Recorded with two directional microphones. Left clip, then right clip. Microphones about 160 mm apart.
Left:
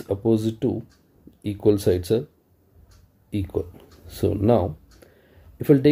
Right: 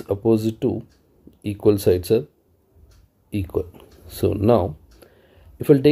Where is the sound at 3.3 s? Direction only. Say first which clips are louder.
Right 2 dB; 20° right (ahead or behind).